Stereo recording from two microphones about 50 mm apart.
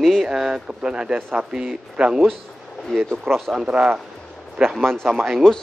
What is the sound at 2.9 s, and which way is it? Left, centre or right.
Speech, centre.